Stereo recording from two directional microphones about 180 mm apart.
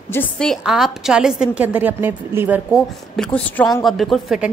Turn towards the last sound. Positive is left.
turn(degrees=-5)  # may be behind; listen again after turning